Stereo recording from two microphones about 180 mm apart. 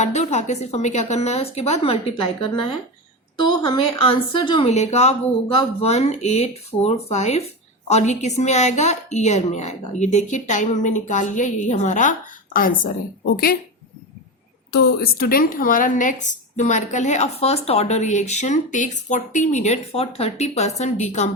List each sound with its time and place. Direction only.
0.0 s a woman's voice: 40° left (ahead or behind); by 13.6 s 55° left (ahead or behind)
14.7 s a woman's voice: 65° left (ahead or behind); by 21.2 s 40° left (ahead or behind)